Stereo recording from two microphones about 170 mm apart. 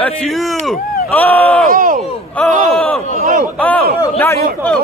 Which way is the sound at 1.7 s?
55° right (ahead or behind).